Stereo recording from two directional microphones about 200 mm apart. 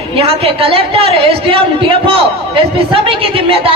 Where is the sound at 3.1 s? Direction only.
25° right (ahead or behind).